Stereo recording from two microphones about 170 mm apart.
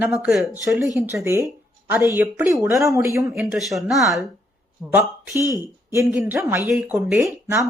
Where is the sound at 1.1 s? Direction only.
15° right (ahead or behind).